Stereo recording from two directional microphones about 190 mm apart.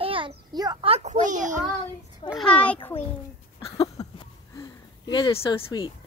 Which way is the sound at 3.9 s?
20° left (ahead or behind).